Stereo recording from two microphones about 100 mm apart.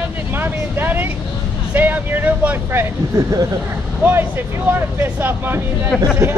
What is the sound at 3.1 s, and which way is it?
Speech, 40° right (ahead or behind).